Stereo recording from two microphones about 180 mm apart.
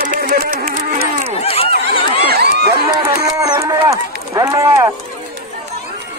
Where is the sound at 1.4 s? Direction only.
35° left (ahead or behind).